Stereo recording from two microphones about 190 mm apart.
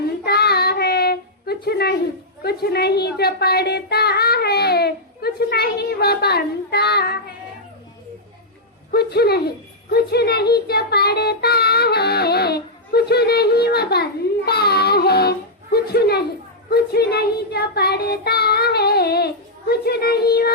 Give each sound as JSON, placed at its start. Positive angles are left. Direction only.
{"t": 0.3, "sound": "child singing", "side_deg": 55}
{"t": 2.4, "sound": "a woman's voice", "side_deg": 55}
{"t": 8.9, "sound": "speech", "side_deg": 55}
{"t": 16.6, "sound": "child singing", "side_deg": 55}